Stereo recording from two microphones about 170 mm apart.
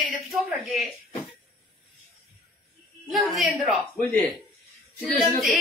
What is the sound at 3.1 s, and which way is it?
Female singing, centre (ahead or behind).